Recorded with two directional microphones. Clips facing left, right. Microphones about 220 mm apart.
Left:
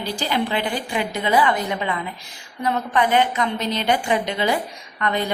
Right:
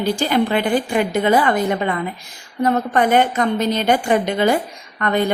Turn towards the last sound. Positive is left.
turn(degrees=-50)  # may be behind; listen again after turning